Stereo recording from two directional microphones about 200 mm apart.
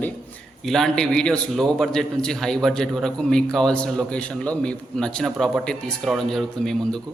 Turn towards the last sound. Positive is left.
turn(degrees=0)  # may be behind; listen again after turning